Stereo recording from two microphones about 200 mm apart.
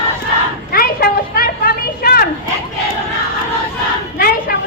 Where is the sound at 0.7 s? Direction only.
50° left (ahead or behind).